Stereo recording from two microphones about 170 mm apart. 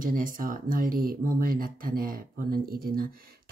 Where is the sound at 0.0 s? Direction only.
55° right (ahead or behind).